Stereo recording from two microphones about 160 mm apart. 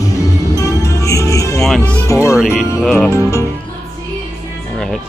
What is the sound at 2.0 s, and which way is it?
Music, 20° left (ahead or behind).